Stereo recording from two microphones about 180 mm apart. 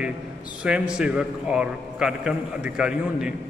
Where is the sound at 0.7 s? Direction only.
5° right (ahead or behind).